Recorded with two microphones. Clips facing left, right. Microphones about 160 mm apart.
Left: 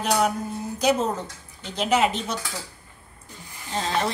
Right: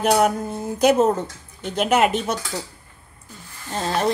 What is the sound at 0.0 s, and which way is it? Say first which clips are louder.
A woman's voice: right 5 dB; 55° right (ahead or behind).